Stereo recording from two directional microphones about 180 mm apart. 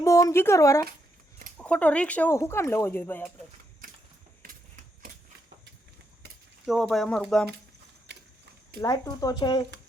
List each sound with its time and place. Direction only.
0.0 s speech: 15° left (ahead or behind)
4.4 s typewriter: 55° right (ahead or behind)
6.7 s speech: centre (ahead or behind)
8.1 s mechanisms: 70° right (ahead or behind)
8.8 s speech: 20° left (ahead or behind)